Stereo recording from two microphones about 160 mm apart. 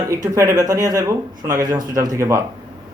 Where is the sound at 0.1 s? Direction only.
20° right (ahead or behind).